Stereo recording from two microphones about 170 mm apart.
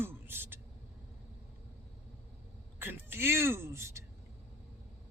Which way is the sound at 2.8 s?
15° right (ahead or behind).